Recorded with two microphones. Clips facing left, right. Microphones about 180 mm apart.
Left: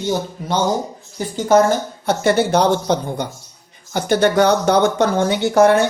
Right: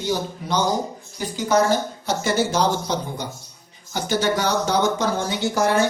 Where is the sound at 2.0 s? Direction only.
60° left (ahead or behind).